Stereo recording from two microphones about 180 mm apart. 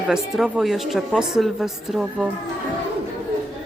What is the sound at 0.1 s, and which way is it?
Speech, centre (ahead or behind).